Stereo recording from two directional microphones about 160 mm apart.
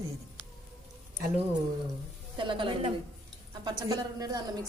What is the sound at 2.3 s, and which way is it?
A woman's voice, 30° right (ahead or behind).